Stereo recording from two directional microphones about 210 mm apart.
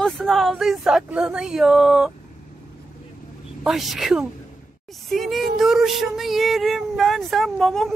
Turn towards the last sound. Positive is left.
turn(degrees=0)  # may be behind; listen again after turning